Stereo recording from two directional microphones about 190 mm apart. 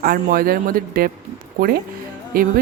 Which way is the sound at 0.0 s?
50° right (ahead or behind).